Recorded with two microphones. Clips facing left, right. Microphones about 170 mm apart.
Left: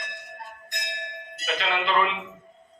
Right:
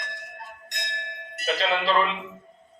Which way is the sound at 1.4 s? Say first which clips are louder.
Right 3 dB; 35° right (ahead or behind).